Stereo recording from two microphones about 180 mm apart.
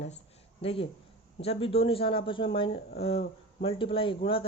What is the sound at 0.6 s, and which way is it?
Speech, 30° left (ahead or behind).